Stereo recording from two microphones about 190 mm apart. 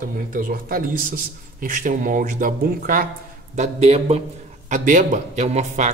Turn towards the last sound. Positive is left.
turn(degrees=-35)  # may be behind; listen again after turning